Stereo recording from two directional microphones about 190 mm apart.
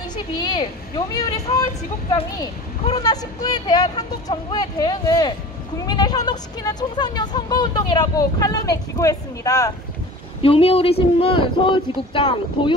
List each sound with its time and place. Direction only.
0.1 s speech: 20° left (ahead or behind)
10.4 s speech: 30° left (ahead or behind)